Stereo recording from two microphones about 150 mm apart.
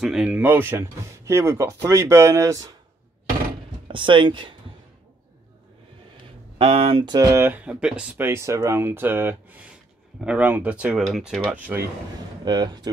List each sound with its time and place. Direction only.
0.0 s speech: 5° right (ahead or behind); by 2.7 s 20° right (ahead or behind)
3.8 s speech: 35° right (ahead or behind)
6.6 s speech: 40° right (ahead or behind)
7.2 s speech: 20° right (ahead or behind)
12.4 s speech: 30° right (ahead or behind)